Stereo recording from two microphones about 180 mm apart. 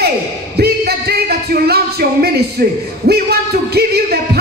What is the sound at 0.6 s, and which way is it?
Music, 60° right (ahead or behind).